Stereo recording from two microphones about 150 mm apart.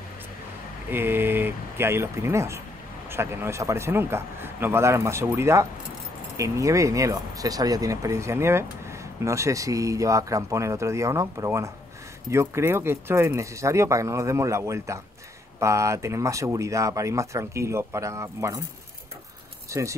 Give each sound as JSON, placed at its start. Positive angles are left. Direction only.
{"t": 0.8, "sound": "speech", "side_deg": -15}
{"t": 19.7, "sound": "speech", "side_deg": -20}